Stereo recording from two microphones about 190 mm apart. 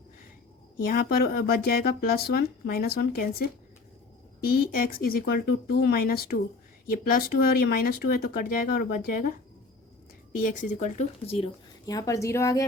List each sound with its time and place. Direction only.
0.9 s speech: 50° left (ahead or behind)
4.4 s speech: 50° left (ahead or behind)
10.4 s speech: 40° left (ahead or behind)
11.9 s a woman's voice: 20° left (ahead or behind)